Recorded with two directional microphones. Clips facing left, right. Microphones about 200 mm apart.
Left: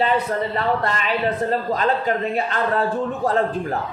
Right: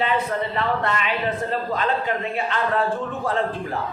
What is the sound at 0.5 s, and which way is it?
A man's voice, 35° left (ahead or behind).